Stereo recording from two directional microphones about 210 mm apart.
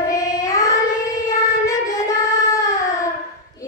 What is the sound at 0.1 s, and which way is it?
Child singing, 15° left (ahead or behind).